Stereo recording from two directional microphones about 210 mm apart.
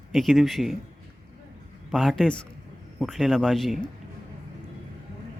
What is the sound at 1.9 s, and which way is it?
Speech, centre (ahead or behind).